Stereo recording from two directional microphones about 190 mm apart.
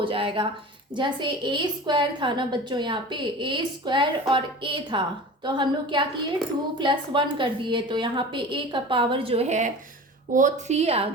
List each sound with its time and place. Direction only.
0.0 s a woman's voice: 30° right (ahead or behind)